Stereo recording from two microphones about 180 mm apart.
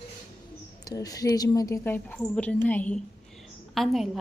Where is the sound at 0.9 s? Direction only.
20° left (ahead or behind).